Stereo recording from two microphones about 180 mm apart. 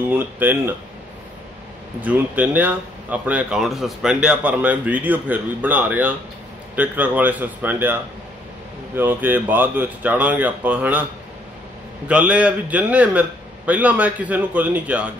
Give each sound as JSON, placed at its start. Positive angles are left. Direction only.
{"t": 0.1, "sound": "speech", "side_deg": -10}
{"t": 2.0, "sound": "speech", "side_deg": -10}
{"t": 12.1, "sound": "speech", "side_deg": -5}